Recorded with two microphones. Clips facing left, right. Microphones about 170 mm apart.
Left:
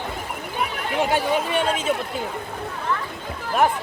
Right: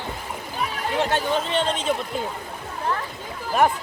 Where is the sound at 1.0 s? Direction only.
10° left (ahead or behind).